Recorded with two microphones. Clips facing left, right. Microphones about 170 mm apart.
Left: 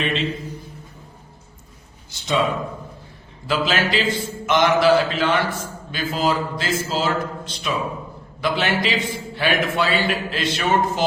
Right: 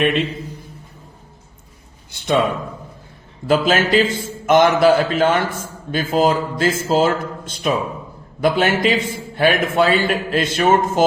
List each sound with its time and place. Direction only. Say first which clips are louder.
0.0 s a man's voice: right 6 dB; 55° right (ahead or behind)
2.1 s a man's voice: right 5 dB; 55° right (ahead or behind)
3.4 s a man's voice: right 5 dB; 45° right (ahead or behind)